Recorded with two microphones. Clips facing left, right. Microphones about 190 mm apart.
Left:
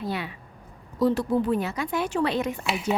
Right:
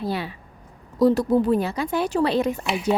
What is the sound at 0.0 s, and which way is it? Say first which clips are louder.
A woman's voice: right 3 dB; 35° right (ahead or behind).